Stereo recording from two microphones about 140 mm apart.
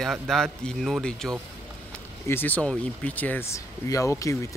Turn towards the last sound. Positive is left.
turn(degrees=20)  # may be behind; listen again after turning